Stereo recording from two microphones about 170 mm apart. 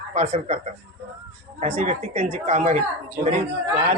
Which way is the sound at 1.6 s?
45° right (ahead or behind).